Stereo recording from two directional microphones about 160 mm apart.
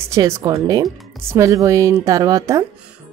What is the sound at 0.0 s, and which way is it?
Speech, 20° right (ahead or behind).